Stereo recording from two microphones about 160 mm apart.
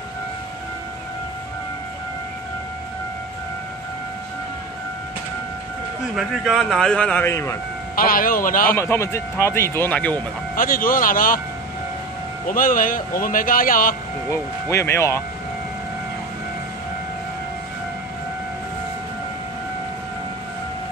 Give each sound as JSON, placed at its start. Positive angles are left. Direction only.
{"t": 6.1, "sound": "a man's voice", "side_deg": 0}
{"t": 7.9, "sound": "a man's voice", "side_deg": 65}
{"t": 8.7, "sound": "speech", "side_deg": 15}
{"t": 10.5, "sound": "a man's voice", "side_deg": 60}
{"t": 12.4, "sound": "a man's voice", "side_deg": 60}
{"t": 14.3, "sound": "speech", "side_deg": 20}